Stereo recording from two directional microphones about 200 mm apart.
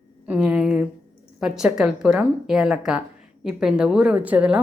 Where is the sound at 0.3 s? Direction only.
5° right (ahead or behind).